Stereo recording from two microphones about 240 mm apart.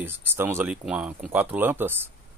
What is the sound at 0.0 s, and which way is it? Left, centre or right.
Speech, centre.